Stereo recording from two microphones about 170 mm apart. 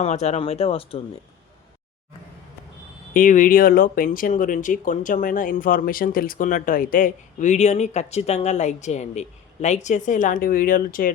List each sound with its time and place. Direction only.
0.0 s speech: 40° left (ahead or behind)
3.1 s speech: 55° left (ahead or behind)